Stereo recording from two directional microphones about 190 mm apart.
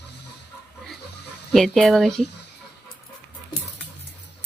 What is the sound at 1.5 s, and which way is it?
Speech, centre (ahead or behind).